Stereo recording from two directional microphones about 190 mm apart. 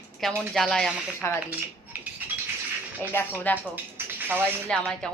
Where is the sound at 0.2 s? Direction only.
Centre (ahead or behind).